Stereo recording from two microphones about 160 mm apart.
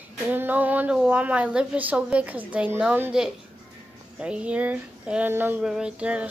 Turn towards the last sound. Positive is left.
turn(degrees=-5)  # may be behind; listen again after turning